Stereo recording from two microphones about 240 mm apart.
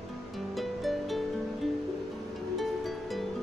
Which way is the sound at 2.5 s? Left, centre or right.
Centre.